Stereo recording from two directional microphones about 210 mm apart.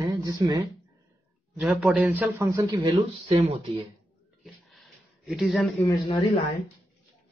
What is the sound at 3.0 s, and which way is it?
Speech, 25° right (ahead or behind).